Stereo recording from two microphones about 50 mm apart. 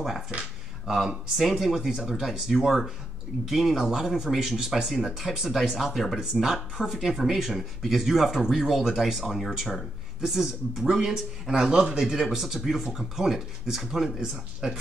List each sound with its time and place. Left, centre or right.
0.8 s speech: centre
14.2 s speech: centre